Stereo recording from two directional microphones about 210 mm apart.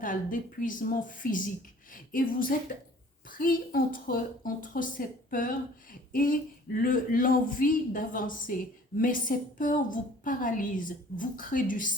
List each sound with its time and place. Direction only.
0.0 s a woman's voice: 40° left (ahead or behind)